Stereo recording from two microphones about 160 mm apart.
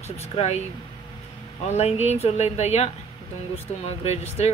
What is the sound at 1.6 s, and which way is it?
Speech, 45° left (ahead or behind).